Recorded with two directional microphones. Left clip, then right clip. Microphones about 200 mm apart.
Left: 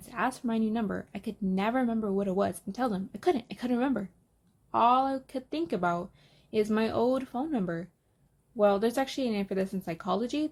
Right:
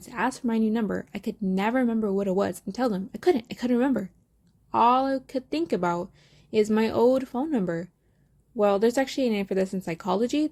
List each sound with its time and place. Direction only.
0.0 s speech: 30° right (ahead or behind)